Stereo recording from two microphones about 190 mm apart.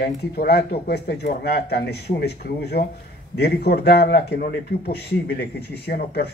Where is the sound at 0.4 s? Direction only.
55° left (ahead or behind).